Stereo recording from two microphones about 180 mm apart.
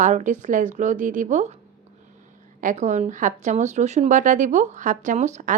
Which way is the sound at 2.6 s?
45° right (ahead or behind).